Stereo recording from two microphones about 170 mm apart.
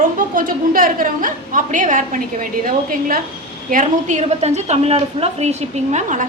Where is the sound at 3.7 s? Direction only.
50° right (ahead or behind).